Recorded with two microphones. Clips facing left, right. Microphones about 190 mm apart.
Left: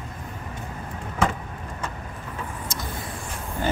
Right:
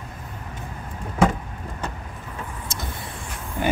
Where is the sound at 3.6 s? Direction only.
15° right (ahead or behind).